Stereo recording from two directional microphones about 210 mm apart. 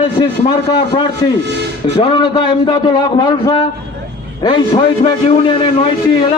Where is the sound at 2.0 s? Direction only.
25° left (ahead or behind).